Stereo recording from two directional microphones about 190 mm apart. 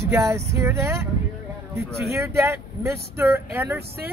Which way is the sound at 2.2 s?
15° right (ahead or behind).